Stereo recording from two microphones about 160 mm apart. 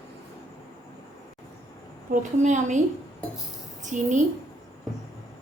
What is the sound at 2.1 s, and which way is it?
Speech, 50° right (ahead or behind).